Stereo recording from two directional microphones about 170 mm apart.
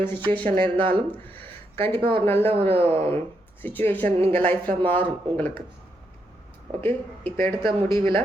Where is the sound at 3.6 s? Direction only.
10° left (ahead or behind).